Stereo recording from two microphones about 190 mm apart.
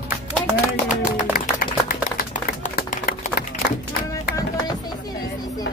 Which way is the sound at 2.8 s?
50° left (ahead or behind).